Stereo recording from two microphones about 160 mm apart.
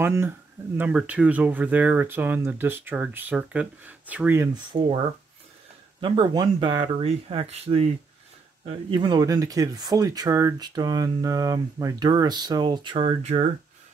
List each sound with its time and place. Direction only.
0.0 s speech: 15° right (ahead or behind)
5.9 s speech: 30° right (ahead or behind)
7.0 s speech: 40° right (ahead or behind)
8.6 s speech: 30° right (ahead or behind)